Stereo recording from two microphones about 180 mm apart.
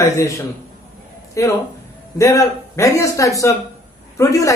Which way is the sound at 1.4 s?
15° left (ahead or behind).